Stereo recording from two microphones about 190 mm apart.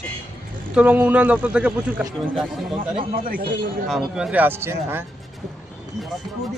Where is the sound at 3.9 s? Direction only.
5° right (ahead or behind).